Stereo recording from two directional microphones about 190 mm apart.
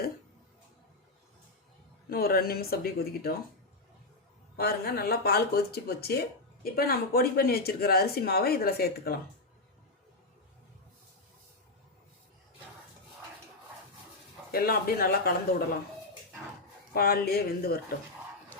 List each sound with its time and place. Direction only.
2.0 s speech: 50° left (ahead or behind)
4.5 s speech: 55° left (ahead or behind)
14.5 s speech: 50° left (ahead or behind)
16.9 s speech: 50° left (ahead or behind)